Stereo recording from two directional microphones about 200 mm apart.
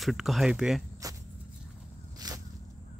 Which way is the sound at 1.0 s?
15° right (ahead or behind).